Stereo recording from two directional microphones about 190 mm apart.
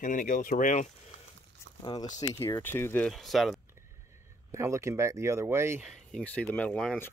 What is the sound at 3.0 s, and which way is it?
Speech, centre (ahead or behind).